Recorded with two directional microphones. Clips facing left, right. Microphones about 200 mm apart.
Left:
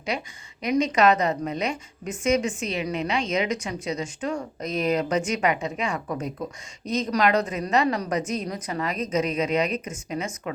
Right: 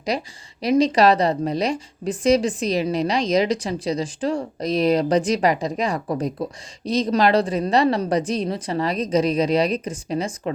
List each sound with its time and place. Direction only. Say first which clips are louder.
0.1 s a woman's voice: right 5 dB; 35° right (ahead or behind)